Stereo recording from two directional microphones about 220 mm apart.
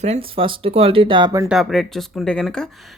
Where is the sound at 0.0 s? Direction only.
25° right (ahead or behind).